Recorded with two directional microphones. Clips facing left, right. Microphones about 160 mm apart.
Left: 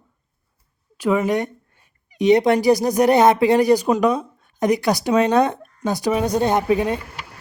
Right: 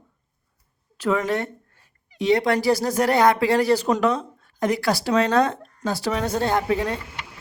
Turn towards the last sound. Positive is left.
turn(degrees=15)  # may be behind; listen again after turning